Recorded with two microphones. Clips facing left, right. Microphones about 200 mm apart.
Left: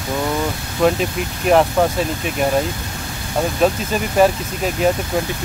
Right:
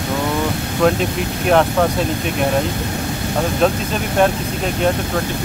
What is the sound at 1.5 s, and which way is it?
Speech, 5° left (ahead or behind).